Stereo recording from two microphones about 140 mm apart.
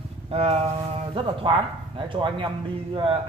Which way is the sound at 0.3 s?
45° right (ahead or behind).